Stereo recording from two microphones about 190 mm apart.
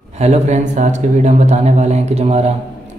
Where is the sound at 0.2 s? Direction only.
35° right (ahead or behind).